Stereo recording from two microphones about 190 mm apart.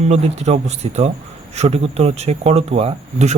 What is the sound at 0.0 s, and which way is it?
Speech, 35° right (ahead or behind).